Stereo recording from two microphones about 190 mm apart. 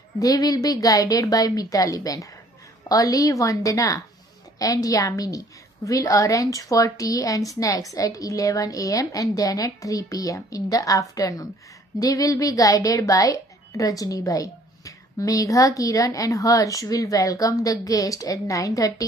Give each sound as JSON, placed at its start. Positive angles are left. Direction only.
{"t": 0.2, "sound": "a woman's voice", "side_deg": 20}